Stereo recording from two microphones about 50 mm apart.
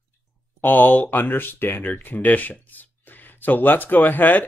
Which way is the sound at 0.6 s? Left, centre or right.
Left.